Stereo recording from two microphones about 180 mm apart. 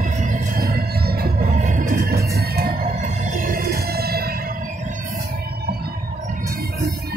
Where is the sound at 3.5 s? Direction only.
60° right (ahead or behind).